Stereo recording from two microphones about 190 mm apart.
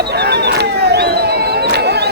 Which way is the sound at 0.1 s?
60° right (ahead or behind).